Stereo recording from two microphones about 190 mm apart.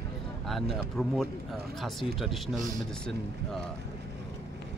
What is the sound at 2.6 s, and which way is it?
Speech, 45° right (ahead or behind).